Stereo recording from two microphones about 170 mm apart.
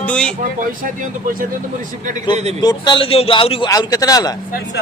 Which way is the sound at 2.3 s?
40° right (ahead or behind).